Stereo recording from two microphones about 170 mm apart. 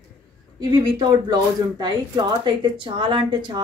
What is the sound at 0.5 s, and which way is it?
Speech, 25° right (ahead or behind).